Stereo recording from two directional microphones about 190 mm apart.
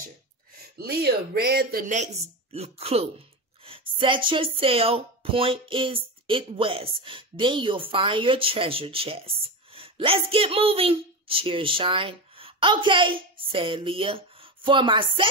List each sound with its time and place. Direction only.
0.7 s speech: 55° right (ahead or behind)
2.5 s a woman's voice: 30° right (ahead or behind)